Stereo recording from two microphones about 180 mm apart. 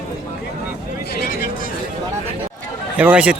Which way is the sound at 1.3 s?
55° left (ahead or behind).